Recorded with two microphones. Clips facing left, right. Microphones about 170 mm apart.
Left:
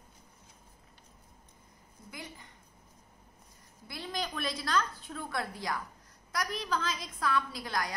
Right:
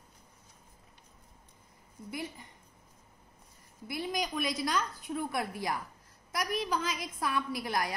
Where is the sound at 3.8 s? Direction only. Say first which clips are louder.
Right 3 dB; 20° right (ahead or behind).